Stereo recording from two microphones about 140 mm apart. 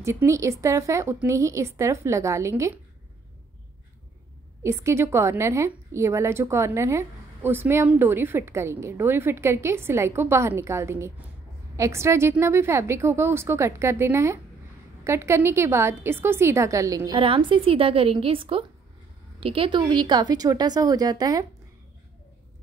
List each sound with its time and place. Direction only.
0.0 s a woman's voice: 20° right (ahead or behind)
4.6 s a woman's voice: 20° right (ahead or behind)
17.2 s a woman's voice: 40° right (ahead or behind)